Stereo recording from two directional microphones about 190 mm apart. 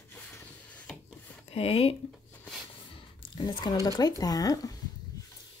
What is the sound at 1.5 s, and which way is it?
Speech, 30° left (ahead or behind).